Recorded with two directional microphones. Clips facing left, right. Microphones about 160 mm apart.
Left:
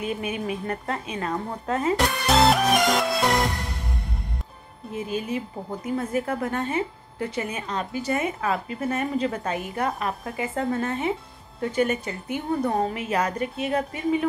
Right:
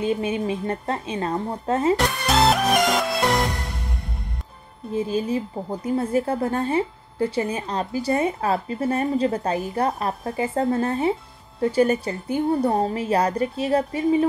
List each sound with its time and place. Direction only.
0.0 s a woman's voice: 30° right (ahead or behind)
2.0 s music: centre (ahead or behind)
4.9 s a woman's voice: 30° right (ahead or behind)